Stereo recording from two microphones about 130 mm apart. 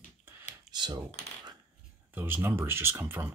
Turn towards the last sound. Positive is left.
turn(degrees=-15)  # may be behind; listen again after turning